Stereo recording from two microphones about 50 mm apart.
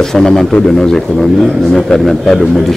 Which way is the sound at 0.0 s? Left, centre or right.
Centre.